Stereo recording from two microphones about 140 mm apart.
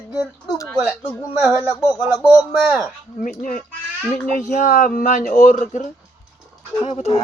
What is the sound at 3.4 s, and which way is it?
Speech, 75° left (ahead or behind).